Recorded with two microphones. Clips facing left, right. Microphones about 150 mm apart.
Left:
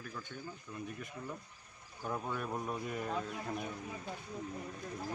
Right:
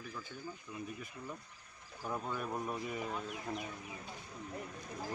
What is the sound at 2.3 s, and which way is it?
Speech, 5° right (ahead or behind).